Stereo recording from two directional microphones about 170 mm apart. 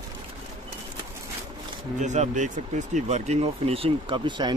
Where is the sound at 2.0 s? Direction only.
45° right (ahead or behind).